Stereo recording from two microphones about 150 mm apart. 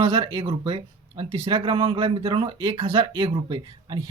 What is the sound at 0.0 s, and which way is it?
Speech, 35° right (ahead or behind).